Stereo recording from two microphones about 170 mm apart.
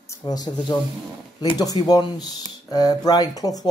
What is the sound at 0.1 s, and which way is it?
Speech, 20° left (ahead or behind).